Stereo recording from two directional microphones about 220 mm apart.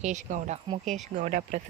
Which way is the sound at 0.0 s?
35° right (ahead or behind).